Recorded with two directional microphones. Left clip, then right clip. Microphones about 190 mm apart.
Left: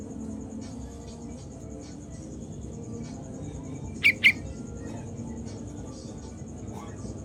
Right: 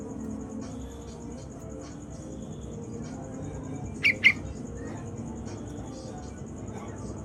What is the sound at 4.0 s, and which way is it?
Squawk, 25° left (ahead or behind).